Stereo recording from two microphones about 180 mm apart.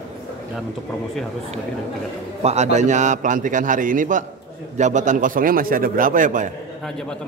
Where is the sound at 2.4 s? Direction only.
40° right (ahead or behind).